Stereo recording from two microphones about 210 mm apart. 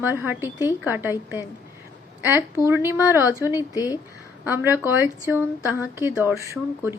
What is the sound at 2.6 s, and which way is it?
Speech, 10° right (ahead or behind).